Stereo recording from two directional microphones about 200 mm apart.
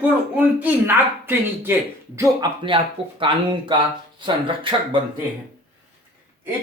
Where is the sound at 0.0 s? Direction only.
10° right (ahead or behind); by 4.9 s 25° right (ahead or behind).